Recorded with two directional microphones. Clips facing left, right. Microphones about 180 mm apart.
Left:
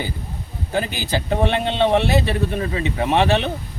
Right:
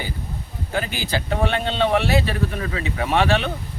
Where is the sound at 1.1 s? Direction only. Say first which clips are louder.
Left 3 dB; 20° left (ahead or behind).